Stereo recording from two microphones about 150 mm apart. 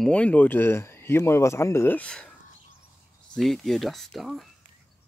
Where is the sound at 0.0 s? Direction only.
10° left (ahead or behind).